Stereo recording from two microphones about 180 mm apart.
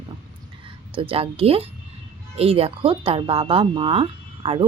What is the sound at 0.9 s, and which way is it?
Speech, 30° right (ahead or behind).